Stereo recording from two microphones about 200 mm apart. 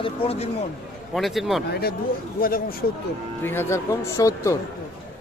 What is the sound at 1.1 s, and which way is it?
Speech, centre (ahead or behind).